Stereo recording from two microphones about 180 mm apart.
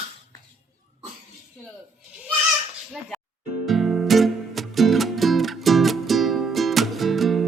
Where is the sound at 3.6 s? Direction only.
Centre (ahead or behind).